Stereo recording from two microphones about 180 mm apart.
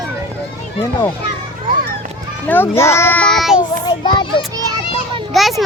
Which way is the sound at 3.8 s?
25° left (ahead or behind).